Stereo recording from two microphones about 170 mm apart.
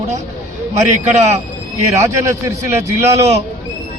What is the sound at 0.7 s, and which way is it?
Speech, 40° right (ahead or behind).